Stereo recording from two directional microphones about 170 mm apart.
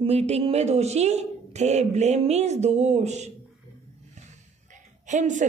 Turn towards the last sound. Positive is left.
turn(degrees=-45)  # may be behind; listen again after turning